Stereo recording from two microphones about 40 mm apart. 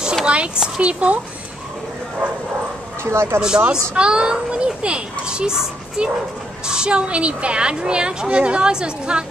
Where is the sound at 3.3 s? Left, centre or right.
Right.